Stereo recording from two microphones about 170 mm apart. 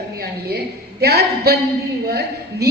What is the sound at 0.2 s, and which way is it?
A woman's voice, 70° right (ahead or behind).